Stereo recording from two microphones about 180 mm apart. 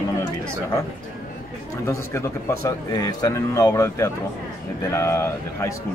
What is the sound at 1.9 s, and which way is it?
Speech, 15° left (ahead or behind).